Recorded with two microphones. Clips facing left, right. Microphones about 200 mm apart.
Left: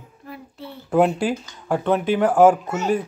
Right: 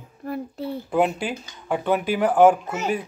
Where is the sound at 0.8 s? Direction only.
5° right (ahead or behind).